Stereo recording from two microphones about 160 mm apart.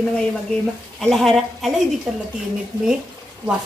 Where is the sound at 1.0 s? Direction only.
Centre (ahead or behind).